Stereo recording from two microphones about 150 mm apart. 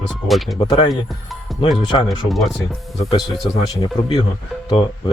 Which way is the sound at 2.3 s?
Centre (ahead or behind).